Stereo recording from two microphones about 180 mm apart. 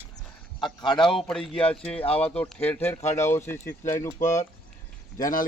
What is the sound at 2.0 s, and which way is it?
Speech, 35° left (ahead or behind).